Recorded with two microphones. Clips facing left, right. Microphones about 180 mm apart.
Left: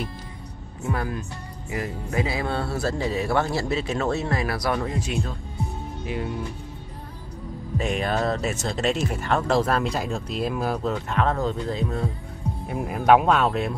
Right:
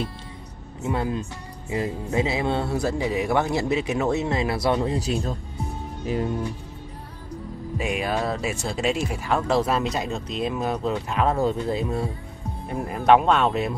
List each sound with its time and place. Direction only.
0.8 s speech: 20° right (ahead or behind); by 6.3 s 40° right (ahead or behind)
7.7 s speech: 10° right (ahead or behind)
12.6 s speech: 5° left (ahead or behind)